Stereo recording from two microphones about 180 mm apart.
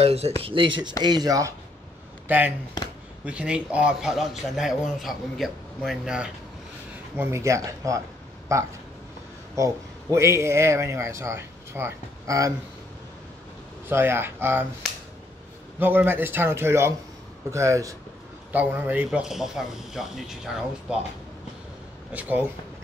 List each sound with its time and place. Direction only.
0.0 s speech: 35° right (ahead or behind); by 2.5 s 10° right (ahead or behind)
2.8 s speech: 20° left (ahead or behind)
3.3 s a man's voice: 5° right (ahead or behind)
7.2 s speech: 15° right (ahead or behind)
10.1 s speech: 15° right (ahead or behind)
13.8 s speech: 15° right (ahead or behind)
15.8 s a man's voice: 10° right (ahead or behind)
22.1 s speech: 10° right (ahead or behind)